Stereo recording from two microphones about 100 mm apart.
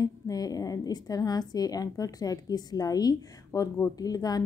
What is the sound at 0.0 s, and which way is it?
A woman's voice, 40° left (ahead or behind).